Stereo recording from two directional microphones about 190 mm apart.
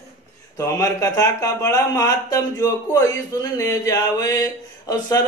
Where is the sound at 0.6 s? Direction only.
20° left (ahead or behind).